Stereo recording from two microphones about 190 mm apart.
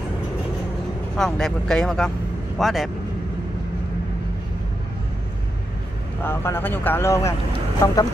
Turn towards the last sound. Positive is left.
turn(degrees=15)  # may be behind; listen again after turning